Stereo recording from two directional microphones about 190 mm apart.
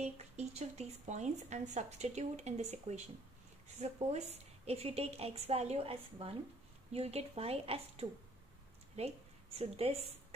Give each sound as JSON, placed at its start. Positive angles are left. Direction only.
{"t": 0.0, "sound": "a woman's voice", "side_deg": -35}